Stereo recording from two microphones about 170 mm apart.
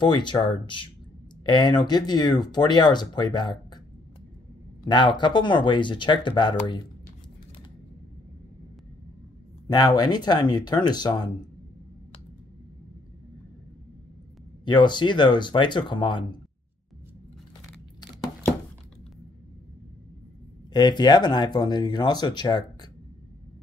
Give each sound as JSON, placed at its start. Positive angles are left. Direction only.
{"t": 0.0, "sound": "speech", "side_deg": 25}
{"t": 4.8, "sound": "speech", "side_deg": 25}
{"t": 9.7, "sound": "speech", "side_deg": 25}
{"t": 14.6, "sound": "speech", "side_deg": 25}
{"t": 20.7, "sound": "speech", "side_deg": 25}